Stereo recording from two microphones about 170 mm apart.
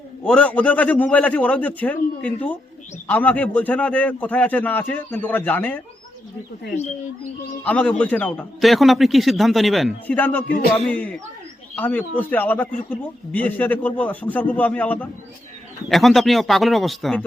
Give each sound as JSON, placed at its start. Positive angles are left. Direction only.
{"t": 0.3, "sound": "a man's voice", "side_deg": 10}
{"t": 7.6, "sound": "a man's voice", "side_deg": 10}